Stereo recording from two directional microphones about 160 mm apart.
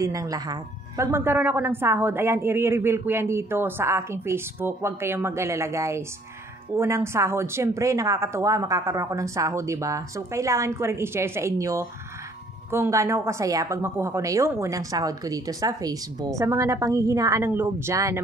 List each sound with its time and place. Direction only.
0.0 s a woman's voice: 20° right (ahead or behind)